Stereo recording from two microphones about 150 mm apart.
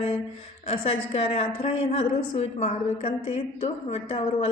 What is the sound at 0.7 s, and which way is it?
A woman's voice, 40° left (ahead or behind).